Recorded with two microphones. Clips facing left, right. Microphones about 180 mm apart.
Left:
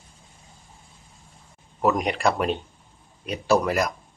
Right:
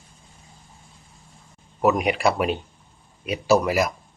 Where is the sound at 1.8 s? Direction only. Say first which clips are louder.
Right 2 dB; 5° right (ahead or behind).